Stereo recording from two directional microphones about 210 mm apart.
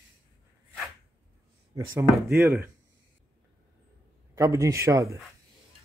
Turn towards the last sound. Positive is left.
turn(degrees=-15)  # may be behind; listen again after turning